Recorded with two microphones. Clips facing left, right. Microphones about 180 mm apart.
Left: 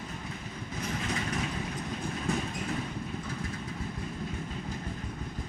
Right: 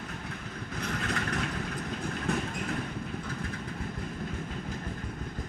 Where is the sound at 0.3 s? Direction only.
65° right (ahead or behind).